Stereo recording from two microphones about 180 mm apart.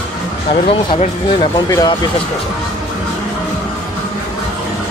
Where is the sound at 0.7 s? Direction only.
30° left (ahead or behind).